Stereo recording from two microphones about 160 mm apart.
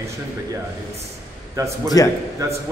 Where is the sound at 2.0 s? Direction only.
20° left (ahead or behind).